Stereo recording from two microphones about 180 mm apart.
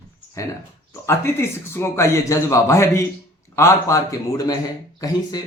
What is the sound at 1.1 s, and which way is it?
A man's voice, 15° left (ahead or behind).